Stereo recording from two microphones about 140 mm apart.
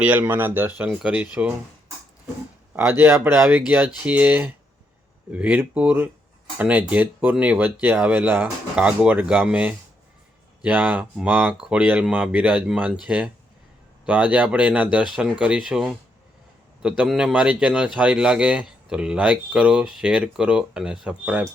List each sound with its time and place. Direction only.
0.0 s speech: 10° right (ahead or behind)
2.7 s speech: 15° right (ahead or behind)
17.0 s speech: 5° right (ahead or behind)